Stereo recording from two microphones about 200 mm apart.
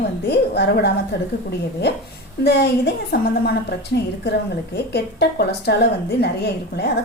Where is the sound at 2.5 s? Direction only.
55° left (ahead or behind).